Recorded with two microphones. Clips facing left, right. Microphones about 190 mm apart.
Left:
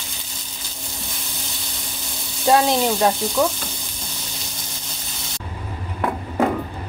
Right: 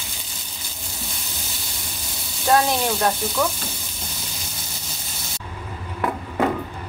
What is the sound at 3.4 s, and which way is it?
Speech, 20° left (ahead or behind).